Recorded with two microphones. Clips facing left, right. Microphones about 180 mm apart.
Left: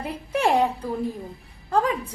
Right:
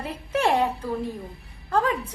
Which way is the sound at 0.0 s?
15° left (ahead or behind).